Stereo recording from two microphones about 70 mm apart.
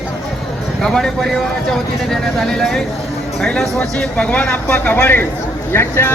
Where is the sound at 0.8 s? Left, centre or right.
Centre.